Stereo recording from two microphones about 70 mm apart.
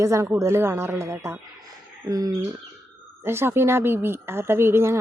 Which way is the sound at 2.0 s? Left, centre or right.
Right.